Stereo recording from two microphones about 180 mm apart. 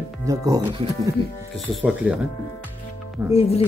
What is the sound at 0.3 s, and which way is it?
Speech, 20° right (ahead or behind).